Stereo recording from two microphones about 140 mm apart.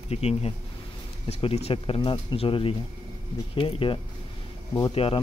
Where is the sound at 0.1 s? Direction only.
45° left (ahead or behind).